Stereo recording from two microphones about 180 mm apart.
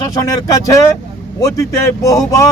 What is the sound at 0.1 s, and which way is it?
Speech, 20° left (ahead or behind).